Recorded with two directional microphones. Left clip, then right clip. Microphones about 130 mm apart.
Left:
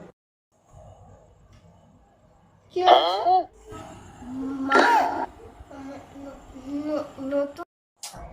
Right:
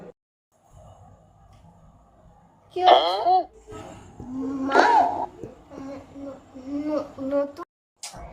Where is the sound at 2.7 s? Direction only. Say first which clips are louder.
Even; 5° left (ahead or behind).